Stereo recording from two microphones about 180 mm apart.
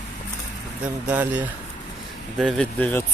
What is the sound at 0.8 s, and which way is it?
Speech, 10° right (ahead or behind).